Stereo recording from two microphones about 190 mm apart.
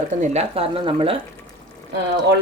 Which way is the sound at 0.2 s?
35° right (ahead or behind).